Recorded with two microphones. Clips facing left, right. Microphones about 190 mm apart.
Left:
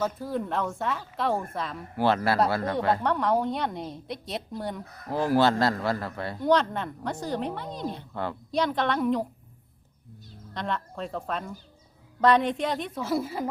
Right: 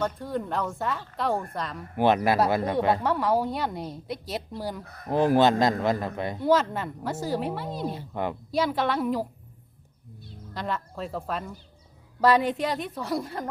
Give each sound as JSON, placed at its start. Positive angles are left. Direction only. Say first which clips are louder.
{"t": 0.0, "sound": "a woman's voice", "louder": "even", "side_deg": 0}
{"t": 2.0, "sound": "speech", "louder": "right 2 dB", "side_deg": -15}
{"t": 3.0, "sound": "a woman's voice", "louder": "even", "side_deg": -5}
{"t": 5.0, "sound": "a man's voice", "louder": "right 2 dB", "side_deg": -20}
{"t": 6.4, "sound": "a woman's voice", "louder": "even", "side_deg": -5}
{"t": 8.1, "sound": "speech", "louder": "right 2 dB", "side_deg": -15}
{"t": 8.5, "sound": "a woman's voice", "louder": "even", "side_deg": -5}
{"t": 10.5, "sound": "a woman's voice", "louder": "even", "side_deg": -5}